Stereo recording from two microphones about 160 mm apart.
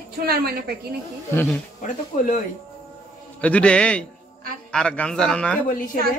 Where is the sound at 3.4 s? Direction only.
10° left (ahead or behind).